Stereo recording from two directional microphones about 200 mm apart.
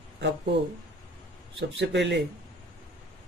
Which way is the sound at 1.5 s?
60° right (ahead or behind).